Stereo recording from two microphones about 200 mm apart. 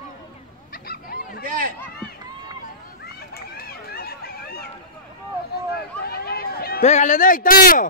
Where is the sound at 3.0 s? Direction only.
50° left (ahead or behind).